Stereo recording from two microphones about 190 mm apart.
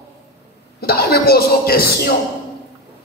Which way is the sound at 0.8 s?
55° left (ahead or behind).